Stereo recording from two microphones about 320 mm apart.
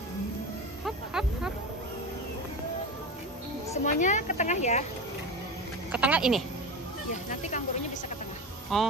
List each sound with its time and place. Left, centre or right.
0.8 s a sound: centre
3.7 s a woman's voice: left
5.9 s speech: centre
7.2 s a woman's voice: left
8.7 s speech: centre